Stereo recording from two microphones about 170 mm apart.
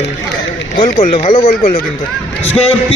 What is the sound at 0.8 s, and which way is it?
A man's voice, 45° left (ahead or behind).